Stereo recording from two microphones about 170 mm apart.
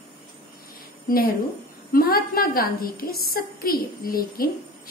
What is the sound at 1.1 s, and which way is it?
A woman's voice, 55° left (ahead or behind).